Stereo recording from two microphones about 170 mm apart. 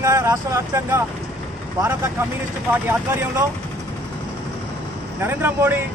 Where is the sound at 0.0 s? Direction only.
15° right (ahead or behind).